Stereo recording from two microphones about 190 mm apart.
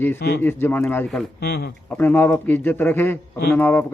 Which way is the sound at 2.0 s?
10° left (ahead or behind).